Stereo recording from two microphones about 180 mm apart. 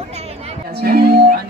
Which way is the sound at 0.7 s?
60° right (ahead or behind).